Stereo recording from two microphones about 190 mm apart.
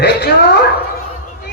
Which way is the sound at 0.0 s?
60° left (ahead or behind).